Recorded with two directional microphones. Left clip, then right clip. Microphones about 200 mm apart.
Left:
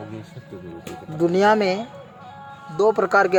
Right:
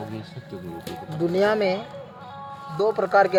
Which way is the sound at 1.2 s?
65° left (ahead or behind).